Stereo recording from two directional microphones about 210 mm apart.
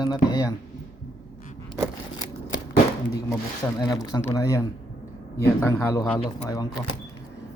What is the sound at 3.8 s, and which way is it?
Speech, 20° left (ahead or behind).